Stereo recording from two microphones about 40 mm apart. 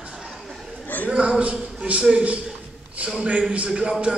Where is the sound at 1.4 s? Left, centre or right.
Right.